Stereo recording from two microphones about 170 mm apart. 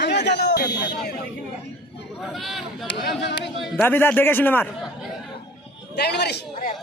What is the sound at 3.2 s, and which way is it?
Speech, 90° left.